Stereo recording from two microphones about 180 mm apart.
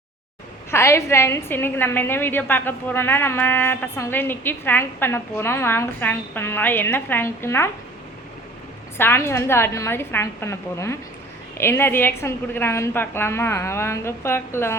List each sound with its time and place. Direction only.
0.7 s a woman's voice: 15° left (ahead or behind)
9.0 s a woman's voice: 15° left (ahead or behind)